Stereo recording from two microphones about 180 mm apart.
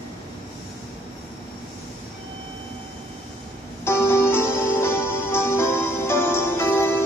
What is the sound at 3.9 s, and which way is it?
Music, 15° left (ahead or behind).